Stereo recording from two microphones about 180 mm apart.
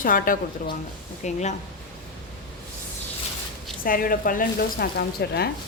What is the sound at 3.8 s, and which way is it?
A woman's voice, 50° left (ahead or behind).